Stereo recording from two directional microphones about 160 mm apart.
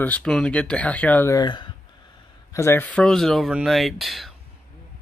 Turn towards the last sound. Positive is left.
turn(degrees=0)  # may be behind; listen again after turning